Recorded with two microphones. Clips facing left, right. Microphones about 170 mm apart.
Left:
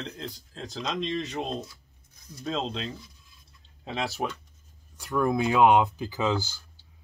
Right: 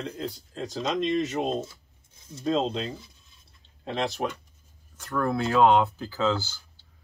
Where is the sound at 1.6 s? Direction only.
25° right (ahead or behind).